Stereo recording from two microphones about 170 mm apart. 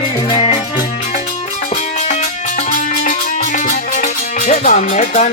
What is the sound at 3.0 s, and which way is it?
Music, 50° left (ahead or behind).